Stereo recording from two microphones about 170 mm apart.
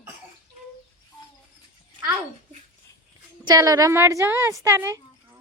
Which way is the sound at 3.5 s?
20° right (ahead or behind).